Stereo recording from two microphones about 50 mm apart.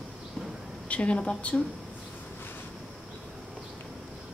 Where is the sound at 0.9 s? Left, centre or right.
Left.